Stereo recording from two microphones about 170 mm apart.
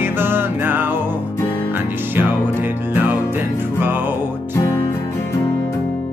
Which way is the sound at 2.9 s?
10° right (ahead or behind).